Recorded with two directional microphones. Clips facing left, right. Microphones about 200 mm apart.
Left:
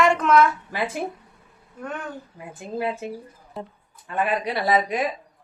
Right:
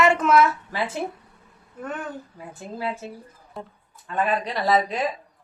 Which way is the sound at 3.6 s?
Centre (ahead or behind).